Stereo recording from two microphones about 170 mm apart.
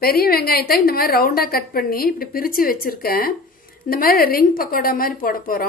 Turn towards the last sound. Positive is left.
turn(degrees=55)  # may be behind; listen again after turning